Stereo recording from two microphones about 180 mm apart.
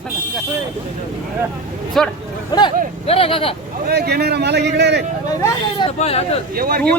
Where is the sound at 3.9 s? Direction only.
65° right (ahead or behind).